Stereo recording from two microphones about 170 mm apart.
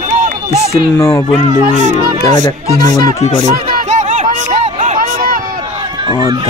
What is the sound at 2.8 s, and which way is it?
Speech, 25° left (ahead or behind).